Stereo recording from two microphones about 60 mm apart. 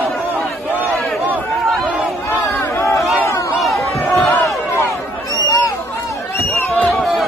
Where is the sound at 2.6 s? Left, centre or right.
Left.